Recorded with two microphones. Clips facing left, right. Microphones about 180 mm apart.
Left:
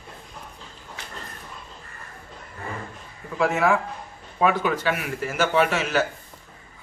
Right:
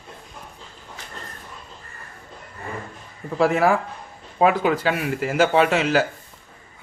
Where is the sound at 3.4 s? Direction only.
35° right (ahead or behind).